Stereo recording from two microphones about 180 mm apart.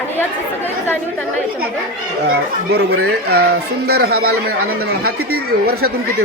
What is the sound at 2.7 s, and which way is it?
Speech, 65° right (ahead or behind).